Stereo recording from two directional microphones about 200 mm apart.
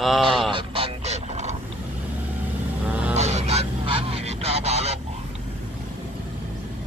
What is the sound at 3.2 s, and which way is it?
Honk, 35° right (ahead or behind).